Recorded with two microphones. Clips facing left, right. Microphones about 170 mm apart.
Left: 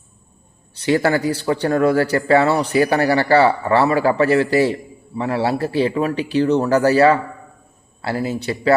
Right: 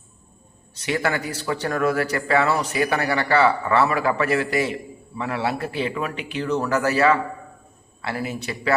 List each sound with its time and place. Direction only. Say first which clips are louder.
0.7 s a man's voice: left 7 dB; 30° left (ahead or behind)